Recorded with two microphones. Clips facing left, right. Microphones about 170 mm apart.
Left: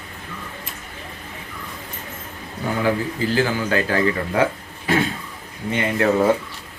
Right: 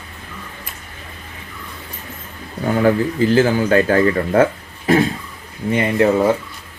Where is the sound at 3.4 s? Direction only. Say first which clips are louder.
Right 6 dB; 40° right (ahead or behind).